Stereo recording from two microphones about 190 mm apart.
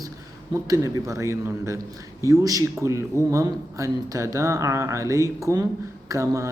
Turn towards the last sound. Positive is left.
turn(degrees=-15)  # may be behind; listen again after turning